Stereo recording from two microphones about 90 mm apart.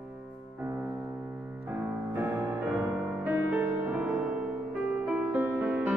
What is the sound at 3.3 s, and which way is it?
Music, 15° right (ahead or behind).